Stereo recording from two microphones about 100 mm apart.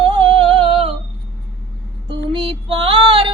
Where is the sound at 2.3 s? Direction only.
60° right (ahead or behind).